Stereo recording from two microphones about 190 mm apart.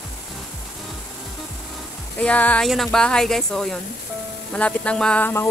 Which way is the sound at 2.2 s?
5° left (ahead or behind).